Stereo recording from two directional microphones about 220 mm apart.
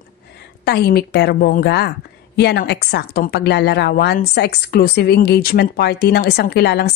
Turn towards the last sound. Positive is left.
turn(degrees=45)  # may be behind; listen again after turning